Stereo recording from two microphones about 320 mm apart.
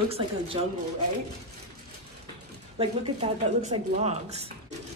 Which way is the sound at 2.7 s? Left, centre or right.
Centre.